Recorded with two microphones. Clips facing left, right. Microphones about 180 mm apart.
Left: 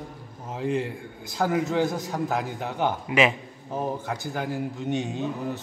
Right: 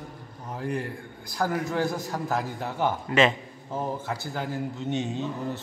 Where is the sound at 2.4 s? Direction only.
15° left (ahead or behind).